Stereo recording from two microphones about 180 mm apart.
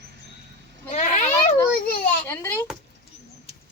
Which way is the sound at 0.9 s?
35° left (ahead or behind).